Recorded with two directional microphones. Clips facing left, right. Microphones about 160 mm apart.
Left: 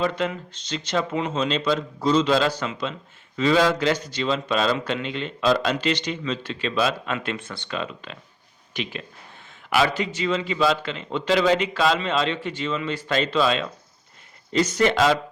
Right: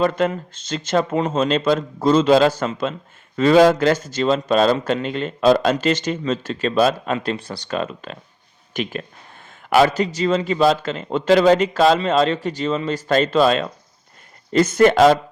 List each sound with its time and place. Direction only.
0.0 s speech: 45° right (ahead or behind)